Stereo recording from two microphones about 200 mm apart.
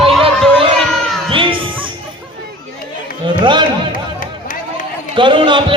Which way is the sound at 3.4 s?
25° right (ahead or behind).